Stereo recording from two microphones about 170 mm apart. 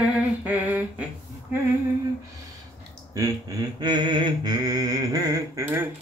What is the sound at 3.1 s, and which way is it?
Mantra, 20° right (ahead or behind).